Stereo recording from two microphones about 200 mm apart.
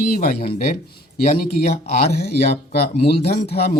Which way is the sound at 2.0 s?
50° left (ahead or behind).